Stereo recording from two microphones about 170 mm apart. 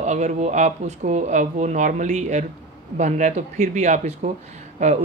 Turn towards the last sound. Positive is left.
turn(degrees=-40)  # may be behind; listen again after turning